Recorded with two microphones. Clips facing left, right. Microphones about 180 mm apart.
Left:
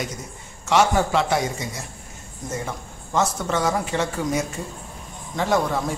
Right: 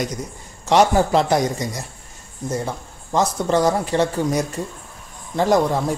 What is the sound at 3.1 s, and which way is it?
A man's voice, 35° right (ahead or behind).